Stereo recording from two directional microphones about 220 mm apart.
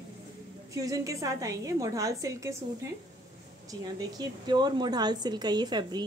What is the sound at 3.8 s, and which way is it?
A woman's voice, 15° right (ahead or behind).